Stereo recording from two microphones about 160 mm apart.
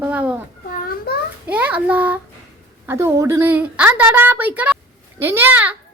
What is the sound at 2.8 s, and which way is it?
A woman's voice, 15° right (ahead or behind).